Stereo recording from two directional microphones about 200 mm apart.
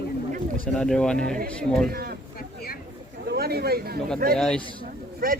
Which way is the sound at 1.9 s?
50° right (ahead or behind).